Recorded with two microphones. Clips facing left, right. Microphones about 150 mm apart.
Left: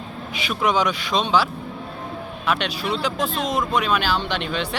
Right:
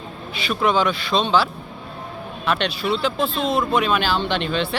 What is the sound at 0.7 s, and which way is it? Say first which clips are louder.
Speech: right 1 dB; 15° left (ahead or behind).